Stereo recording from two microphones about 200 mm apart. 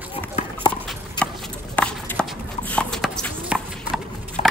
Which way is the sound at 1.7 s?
5° left (ahead or behind).